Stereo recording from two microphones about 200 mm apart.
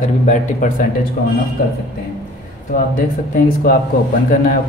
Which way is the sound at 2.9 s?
45° left (ahead or behind).